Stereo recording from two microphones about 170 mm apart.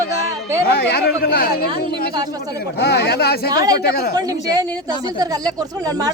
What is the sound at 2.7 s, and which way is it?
Speech, 75° left (ahead or behind).